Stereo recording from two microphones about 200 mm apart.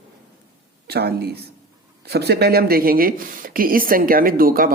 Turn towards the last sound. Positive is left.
turn(degrees=-45)  # may be behind; listen again after turning